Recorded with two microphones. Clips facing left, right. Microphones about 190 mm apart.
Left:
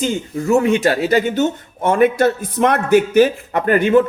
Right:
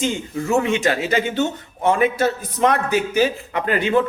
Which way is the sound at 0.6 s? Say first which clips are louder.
Left 4 dB; 40° left (ahead or behind).